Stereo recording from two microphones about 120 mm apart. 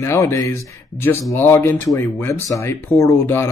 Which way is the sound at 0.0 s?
20° left (ahead or behind).